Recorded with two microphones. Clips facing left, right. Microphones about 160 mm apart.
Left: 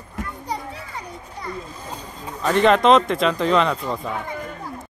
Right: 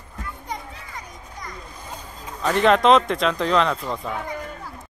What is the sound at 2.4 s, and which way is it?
Speech, centre (ahead or behind).